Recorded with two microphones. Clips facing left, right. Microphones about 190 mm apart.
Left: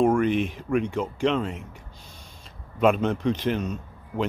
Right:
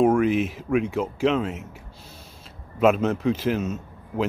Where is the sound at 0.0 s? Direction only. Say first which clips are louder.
Right 2 dB; 5° right (ahead or behind).